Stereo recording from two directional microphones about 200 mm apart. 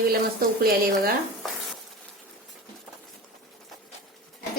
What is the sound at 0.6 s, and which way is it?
Speech, 50° right (ahead or behind).